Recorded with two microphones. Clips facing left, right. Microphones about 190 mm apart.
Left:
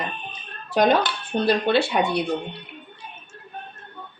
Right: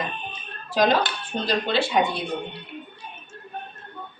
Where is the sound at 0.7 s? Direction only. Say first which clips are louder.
Left 2 dB; 60° left (ahead or behind).